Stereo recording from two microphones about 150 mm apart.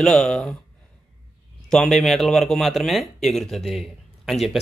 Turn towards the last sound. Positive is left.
turn(degrees=0)  # may be behind; listen again after turning